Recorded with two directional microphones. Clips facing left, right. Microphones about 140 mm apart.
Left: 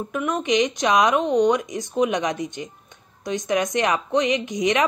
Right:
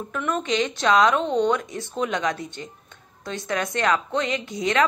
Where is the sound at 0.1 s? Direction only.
15° left (ahead or behind).